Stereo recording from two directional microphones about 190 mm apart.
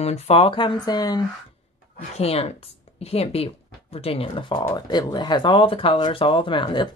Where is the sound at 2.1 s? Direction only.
30° left (ahead or behind).